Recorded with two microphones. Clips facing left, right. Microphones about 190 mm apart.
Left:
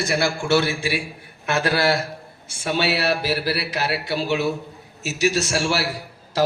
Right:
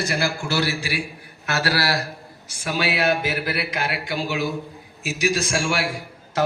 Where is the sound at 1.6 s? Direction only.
20° left (ahead or behind).